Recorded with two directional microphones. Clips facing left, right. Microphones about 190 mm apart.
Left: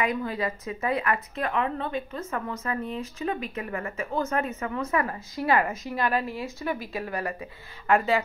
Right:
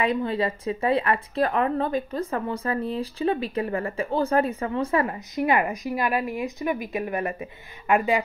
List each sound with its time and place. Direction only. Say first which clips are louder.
0.0 s speech: right 4 dB; 30° right (ahead or behind)